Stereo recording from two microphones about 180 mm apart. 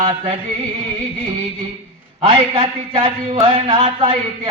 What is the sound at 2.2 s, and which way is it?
Speech, 30° right (ahead or behind).